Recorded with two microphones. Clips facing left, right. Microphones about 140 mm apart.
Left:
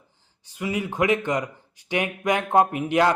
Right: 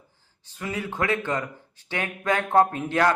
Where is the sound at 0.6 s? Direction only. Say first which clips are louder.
Left 4 dB; 15° left (ahead or behind).